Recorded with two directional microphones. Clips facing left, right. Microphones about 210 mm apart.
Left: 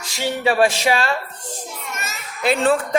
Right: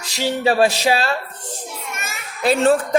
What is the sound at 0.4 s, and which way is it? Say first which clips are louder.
Speech: right 1 dB; 35° right (ahead or behind).